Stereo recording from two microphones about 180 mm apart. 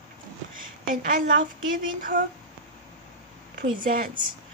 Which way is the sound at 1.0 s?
50° right (ahead or behind).